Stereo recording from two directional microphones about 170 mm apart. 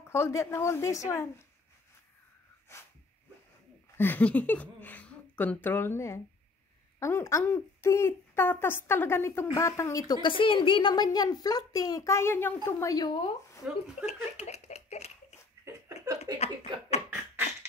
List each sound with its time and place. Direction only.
0.0 s speech: 15° left (ahead or behind)
2.7 s speech: 15° left (ahead or behind)
4.0 s a woman's voice: 10° left (ahead or behind)
14.0 s speech: 40° left (ahead or behind)
16.3 s speech: 20° right (ahead or behind)